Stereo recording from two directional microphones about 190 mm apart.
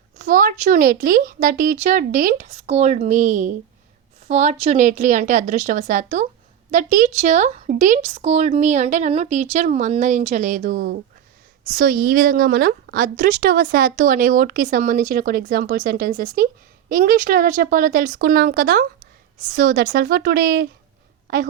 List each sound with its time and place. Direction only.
0.2 s a woman's voice: 45° right (ahead or behind)